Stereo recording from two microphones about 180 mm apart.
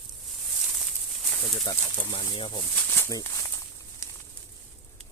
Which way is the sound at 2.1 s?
25° left (ahead or behind).